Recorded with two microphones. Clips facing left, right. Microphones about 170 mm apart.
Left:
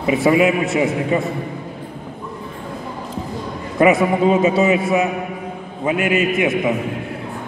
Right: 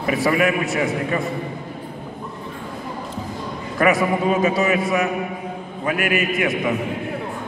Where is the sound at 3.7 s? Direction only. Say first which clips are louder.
Left 4 dB; 25° left (ahead or behind).